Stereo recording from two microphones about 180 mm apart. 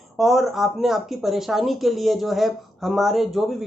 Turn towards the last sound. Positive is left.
turn(degrees=0)  # may be behind; listen again after turning